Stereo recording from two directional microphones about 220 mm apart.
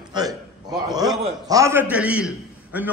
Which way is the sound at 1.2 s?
15° right (ahead or behind).